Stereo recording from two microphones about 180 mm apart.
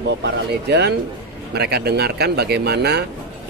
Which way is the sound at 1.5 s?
60° right (ahead or behind).